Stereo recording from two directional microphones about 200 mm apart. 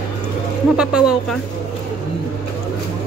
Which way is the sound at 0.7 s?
5° right (ahead or behind).